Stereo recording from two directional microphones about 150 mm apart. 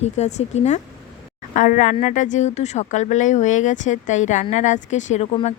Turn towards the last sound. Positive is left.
turn(degrees=50)  # may be behind; listen again after turning